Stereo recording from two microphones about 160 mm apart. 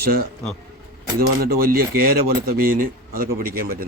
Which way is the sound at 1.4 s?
70° right (ahead or behind).